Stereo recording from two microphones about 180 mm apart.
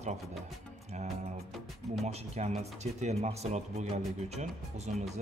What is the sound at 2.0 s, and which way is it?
Speech, 35° right (ahead or behind).